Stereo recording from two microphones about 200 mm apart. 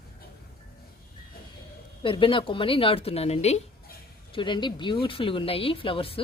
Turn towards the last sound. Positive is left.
turn(degrees=25)  # may be behind; listen again after turning